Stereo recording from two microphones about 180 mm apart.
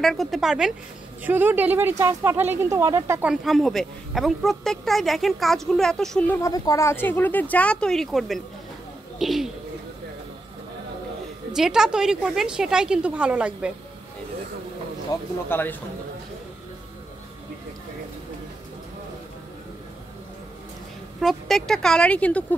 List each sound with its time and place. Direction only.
0.0 s speech: centre (ahead or behind)
11.5 s speech: 5° right (ahead or behind)
15.1 s a man's voice: 20° left (ahead or behind)
21.2 s speech: centre (ahead or behind)